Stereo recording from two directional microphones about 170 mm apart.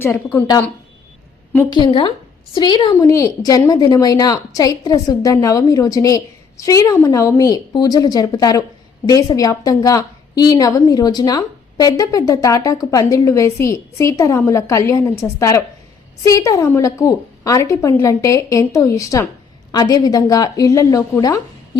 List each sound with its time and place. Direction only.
1.7 s a woman's voice: 25° left (ahead or behind)